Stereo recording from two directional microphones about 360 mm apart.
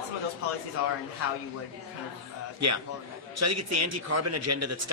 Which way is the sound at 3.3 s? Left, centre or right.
Right.